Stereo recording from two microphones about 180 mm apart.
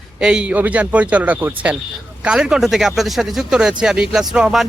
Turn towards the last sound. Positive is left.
turn(degrees=0)  # may be behind; listen again after turning